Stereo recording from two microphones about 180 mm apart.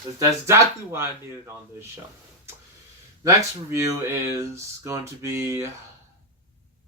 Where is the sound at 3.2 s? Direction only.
15° right (ahead or behind).